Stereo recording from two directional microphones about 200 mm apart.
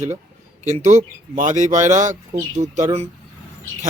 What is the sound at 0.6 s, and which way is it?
Speech, 35° right (ahead or behind).